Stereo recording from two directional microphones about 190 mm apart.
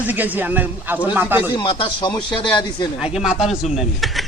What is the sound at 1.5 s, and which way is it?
Speech, 25° left (ahead or behind).